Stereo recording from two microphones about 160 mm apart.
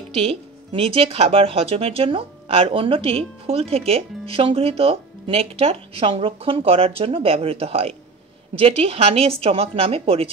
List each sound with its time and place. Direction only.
0.1 s speech: 35° right (ahead or behind)